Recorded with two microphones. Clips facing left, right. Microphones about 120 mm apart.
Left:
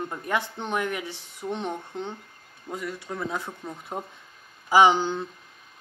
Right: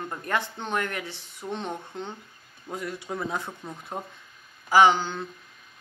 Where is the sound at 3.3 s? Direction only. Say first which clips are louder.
Even; 5° left (ahead or behind).